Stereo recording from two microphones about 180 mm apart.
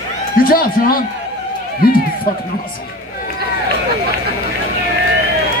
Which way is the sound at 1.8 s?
55° left (ahead or behind).